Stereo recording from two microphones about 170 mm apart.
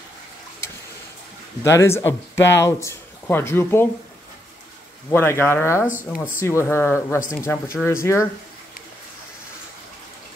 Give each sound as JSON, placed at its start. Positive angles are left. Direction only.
{"t": 1.6, "sound": "speech", "side_deg": 15}
{"t": 5.1, "sound": "speech", "side_deg": 15}